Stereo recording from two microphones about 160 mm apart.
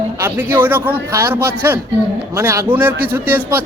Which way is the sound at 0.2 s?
10° right (ahead or behind).